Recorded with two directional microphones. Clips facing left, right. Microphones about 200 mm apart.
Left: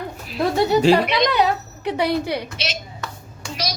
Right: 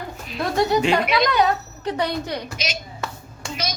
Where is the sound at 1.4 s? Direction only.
10° left (ahead or behind).